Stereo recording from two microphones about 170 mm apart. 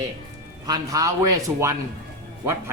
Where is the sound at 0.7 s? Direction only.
20° right (ahead or behind).